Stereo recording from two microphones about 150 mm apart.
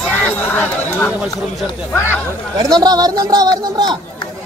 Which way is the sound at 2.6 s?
25° right (ahead or behind).